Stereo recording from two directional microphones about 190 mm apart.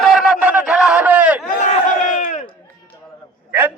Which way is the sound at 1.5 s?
45° left (ahead or behind).